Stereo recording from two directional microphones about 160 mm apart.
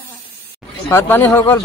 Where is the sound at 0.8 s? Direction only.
15° left (ahead or behind).